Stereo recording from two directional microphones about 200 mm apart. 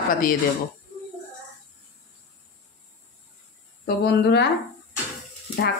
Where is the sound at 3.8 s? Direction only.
55° left (ahead or behind).